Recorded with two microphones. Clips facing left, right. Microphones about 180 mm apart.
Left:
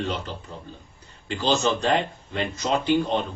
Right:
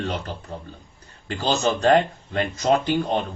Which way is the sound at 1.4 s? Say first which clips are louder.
Right 1 dB; 45° right (ahead or behind).